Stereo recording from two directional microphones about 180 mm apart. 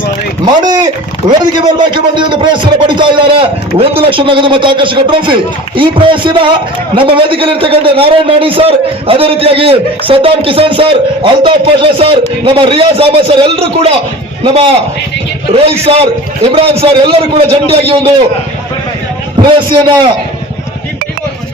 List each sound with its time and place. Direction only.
0.6 s a man's voice: 20° right (ahead or behind)
19.4 s a man's voice: 25° right (ahead or behind)